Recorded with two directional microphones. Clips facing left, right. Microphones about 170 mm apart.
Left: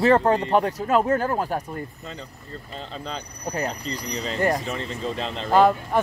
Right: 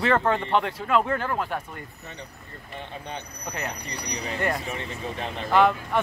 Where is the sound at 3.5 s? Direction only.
30° left (ahead or behind).